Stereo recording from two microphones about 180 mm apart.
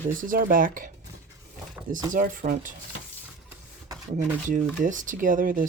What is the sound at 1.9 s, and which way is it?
Speech, 50° right (ahead or behind).